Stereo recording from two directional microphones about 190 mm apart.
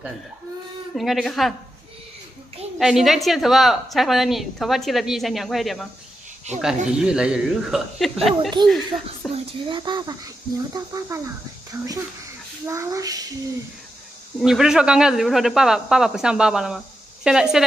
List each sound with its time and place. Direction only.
0.9 s speech: centre (ahead or behind)
2.8 s speech: centre (ahead or behind)
6.9 s speech: 5° right (ahead or behind)
9.3 s speech: 25° right (ahead or behind)
12.6 s speech: 15° right (ahead or behind)
14.4 s speech: 5° right (ahead or behind)